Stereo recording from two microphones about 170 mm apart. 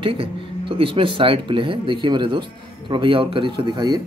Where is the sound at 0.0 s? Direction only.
30° right (ahead or behind).